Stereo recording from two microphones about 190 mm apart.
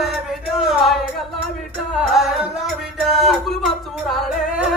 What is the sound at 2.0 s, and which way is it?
Music, 5° right (ahead or behind).